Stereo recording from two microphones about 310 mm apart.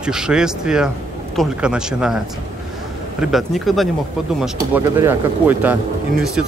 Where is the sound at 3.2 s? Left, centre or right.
Centre.